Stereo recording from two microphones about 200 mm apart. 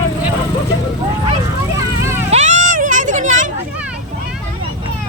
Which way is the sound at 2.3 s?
35° right (ahead or behind).